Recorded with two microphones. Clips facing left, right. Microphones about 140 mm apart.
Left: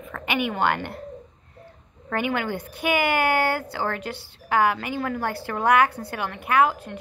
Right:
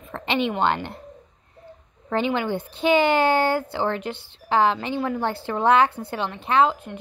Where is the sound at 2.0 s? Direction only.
20° right (ahead or behind).